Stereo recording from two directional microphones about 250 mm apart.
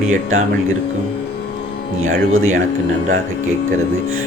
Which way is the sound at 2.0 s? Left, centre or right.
Right.